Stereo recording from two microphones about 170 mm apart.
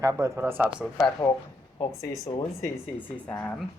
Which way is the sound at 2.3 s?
30° left (ahead or behind).